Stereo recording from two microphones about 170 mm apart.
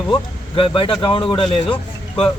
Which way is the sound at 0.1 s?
30° left (ahead or behind).